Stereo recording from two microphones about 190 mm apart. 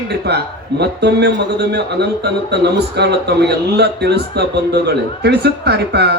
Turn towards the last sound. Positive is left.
turn(degrees=-60)  # may be behind; listen again after turning